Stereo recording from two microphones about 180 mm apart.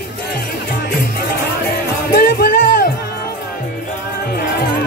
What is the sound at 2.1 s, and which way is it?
Music, 50° left (ahead or behind).